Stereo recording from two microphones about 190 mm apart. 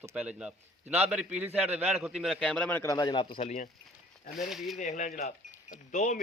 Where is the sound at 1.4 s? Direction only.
35° right (ahead or behind).